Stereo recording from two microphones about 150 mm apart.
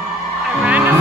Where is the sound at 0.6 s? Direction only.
10° right (ahead or behind).